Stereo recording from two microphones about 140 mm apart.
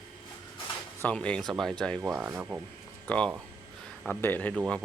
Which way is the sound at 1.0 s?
10° left (ahead or behind).